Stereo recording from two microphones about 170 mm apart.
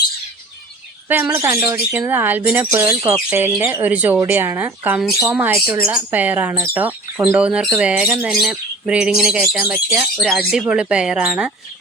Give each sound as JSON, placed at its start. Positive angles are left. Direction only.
{"t": 1.0, "sound": "speech", "side_deg": -10}